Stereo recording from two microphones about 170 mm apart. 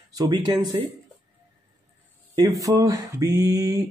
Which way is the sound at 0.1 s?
25° right (ahead or behind).